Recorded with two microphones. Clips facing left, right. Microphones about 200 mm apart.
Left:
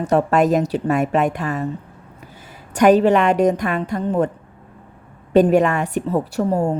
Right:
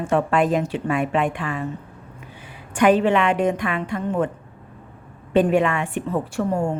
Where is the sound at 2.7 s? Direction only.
40° left (ahead or behind).